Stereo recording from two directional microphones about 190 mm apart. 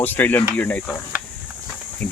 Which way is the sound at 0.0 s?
10° left (ahead or behind).